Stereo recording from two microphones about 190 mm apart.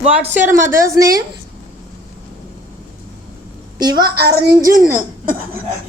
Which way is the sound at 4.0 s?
55° right (ahead or behind).